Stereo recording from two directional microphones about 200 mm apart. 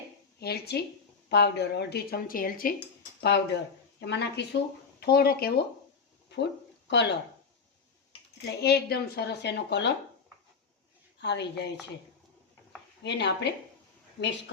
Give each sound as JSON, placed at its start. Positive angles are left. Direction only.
{"t": 0.3, "sound": "speech", "side_deg": 55}
{"t": 3.2, "sound": "a woman's voice", "side_deg": 55}
{"t": 8.4, "sound": "a woman's voice", "side_deg": 55}
{"t": 11.2, "sound": "a woman's voice", "side_deg": 60}
{"t": 13.0, "sound": "a woman's voice", "side_deg": 55}